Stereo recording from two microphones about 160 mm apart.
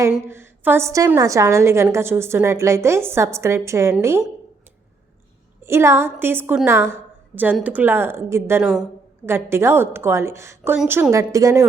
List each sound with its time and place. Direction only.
0.1 s a woman's voice: 15° right (ahead or behind)
5.6 s a woman's voice: 15° right (ahead or behind)